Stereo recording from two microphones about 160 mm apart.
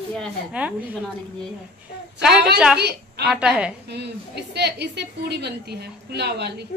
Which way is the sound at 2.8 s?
90° right.